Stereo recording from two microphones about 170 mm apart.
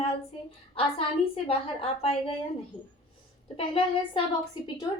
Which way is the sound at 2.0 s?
35° left (ahead or behind).